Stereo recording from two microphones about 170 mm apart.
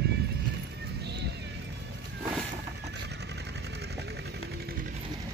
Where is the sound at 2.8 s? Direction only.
80° right; by 5.0 s 60° right (ahead or behind).